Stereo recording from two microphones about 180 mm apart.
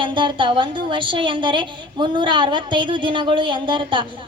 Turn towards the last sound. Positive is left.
turn(degrees=-25)  # may be behind; listen again after turning